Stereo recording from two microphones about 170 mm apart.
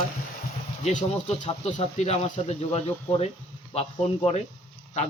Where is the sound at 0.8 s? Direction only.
40° left (ahead or behind).